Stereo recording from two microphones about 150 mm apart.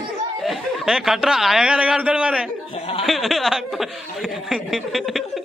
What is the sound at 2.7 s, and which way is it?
Speech, 40° left (ahead or behind).